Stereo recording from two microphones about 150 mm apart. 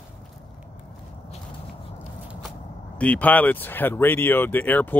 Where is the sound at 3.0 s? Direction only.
10° left (ahead or behind).